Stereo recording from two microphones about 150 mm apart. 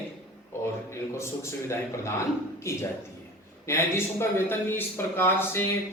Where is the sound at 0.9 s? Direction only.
20° left (ahead or behind).